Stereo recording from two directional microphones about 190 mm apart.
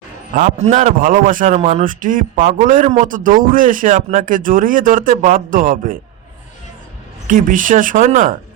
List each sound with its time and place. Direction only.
0.3 s a man's voice: 40° right (ahead or behind)
7.3 s a man's voice: 45° right (ahead or behind)